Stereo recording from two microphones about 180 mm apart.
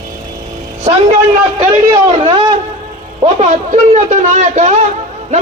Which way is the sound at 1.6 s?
30° right (ahead or behind).